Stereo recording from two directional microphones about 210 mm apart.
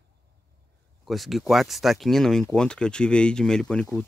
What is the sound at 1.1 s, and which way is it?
Speech, centre (ahead or behind).